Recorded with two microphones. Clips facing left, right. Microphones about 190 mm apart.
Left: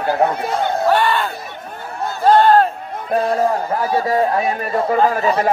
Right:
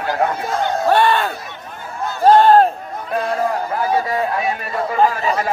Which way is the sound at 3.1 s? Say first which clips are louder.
Left 3 dB; 35° left (ahead or behind).